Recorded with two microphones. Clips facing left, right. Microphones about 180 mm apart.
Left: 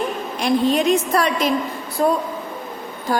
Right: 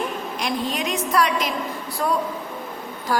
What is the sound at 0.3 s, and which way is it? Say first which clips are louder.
A woman's voice: left 10 dB; 30° left (ahead or behind).